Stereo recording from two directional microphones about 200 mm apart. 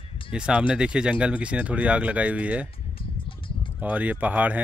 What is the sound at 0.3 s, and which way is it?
Speech, 5° right (ahead or behind).